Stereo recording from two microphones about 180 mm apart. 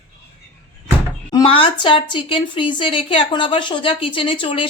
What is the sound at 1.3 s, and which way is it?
Speech, 25° left (ahead or behind).